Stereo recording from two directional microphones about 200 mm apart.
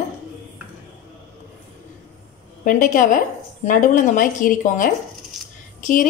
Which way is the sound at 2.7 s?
40° left (ahead or behind).